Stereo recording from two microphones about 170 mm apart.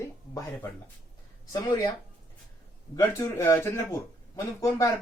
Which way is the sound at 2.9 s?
15° left (ahead or behind).